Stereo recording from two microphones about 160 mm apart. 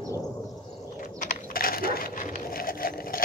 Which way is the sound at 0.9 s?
55° left (ahead or behind).